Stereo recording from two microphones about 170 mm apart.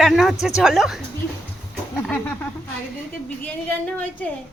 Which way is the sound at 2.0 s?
10° left (ahead or behind).